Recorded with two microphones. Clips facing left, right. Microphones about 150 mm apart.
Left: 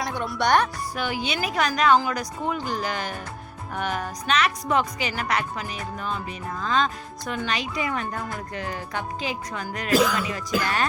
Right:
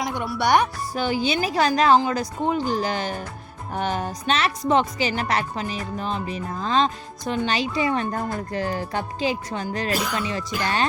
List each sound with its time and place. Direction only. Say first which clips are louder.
0.0 s speech: right 1 dB; 15° right (ahead or behind)
0.9 s speech: right 6 dB; 30° right (ahead or behind)
3.8 s music: right 3 dB; 30° right (ahead or behind)
4.7 s speech: right 7 dB; 30° right (ahead or behind)